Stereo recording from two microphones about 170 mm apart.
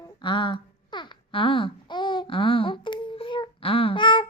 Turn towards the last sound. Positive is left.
turn(degrees=30)  # may be behind; listen again after turning